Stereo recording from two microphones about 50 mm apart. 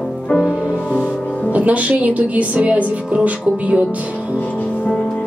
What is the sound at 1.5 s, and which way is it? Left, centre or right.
Speech, right.